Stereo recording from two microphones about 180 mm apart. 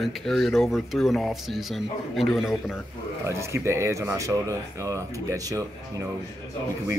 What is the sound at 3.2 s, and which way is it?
Speech, 15° right (ahead or behind).